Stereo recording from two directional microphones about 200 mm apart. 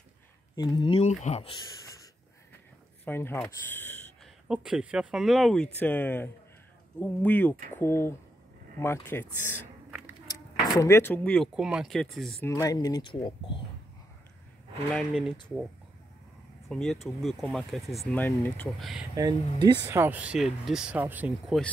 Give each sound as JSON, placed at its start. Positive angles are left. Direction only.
{"t": 0.6, "sound": "speech", "side_deg": 20}
{"t": 3.1, "sound": "speech", "side_deg": 10}
{"t": 4.5, "sound": "speech", "side_deg": -5}
{"t": 12.4, "sound": "speech", "side_deg": 15}
{"t": 15.0, "sound": "speech", "side_deg": -5}
{"t": 16.6, "sound": "speech", "side_deg": 0}